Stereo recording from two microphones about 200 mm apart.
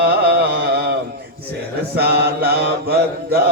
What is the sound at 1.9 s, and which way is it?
Mantra, 55° right (ahead or behind).